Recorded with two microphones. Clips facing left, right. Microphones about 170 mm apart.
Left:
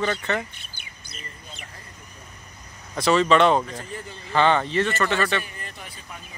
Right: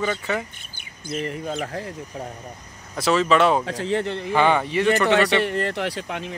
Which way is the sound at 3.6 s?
90° right.